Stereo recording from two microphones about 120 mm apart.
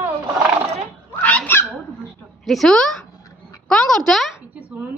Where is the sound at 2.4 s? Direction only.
Centre (ahead or behind).